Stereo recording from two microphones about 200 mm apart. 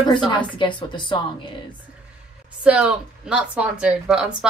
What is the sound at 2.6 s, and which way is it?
Speech, 5° right (ahead or behind).